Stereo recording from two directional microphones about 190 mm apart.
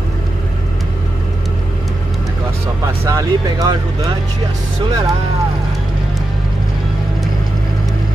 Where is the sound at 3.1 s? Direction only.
15° right (ahead or behind).